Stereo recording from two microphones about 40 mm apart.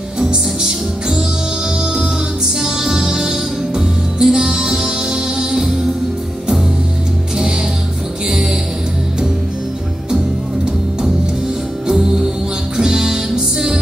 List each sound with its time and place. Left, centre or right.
0.2 s music: centre
2.6 s music: centre
11.9 s music: centre